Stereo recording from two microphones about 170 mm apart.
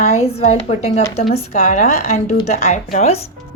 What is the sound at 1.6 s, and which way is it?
A woman's voice, 50° left (ahead or behind).